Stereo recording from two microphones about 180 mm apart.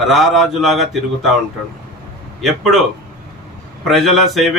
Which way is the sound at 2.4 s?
Centre (ahead or behind).